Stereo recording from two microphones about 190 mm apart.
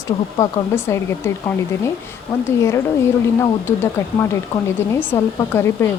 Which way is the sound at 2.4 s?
15° left (ahead or behind).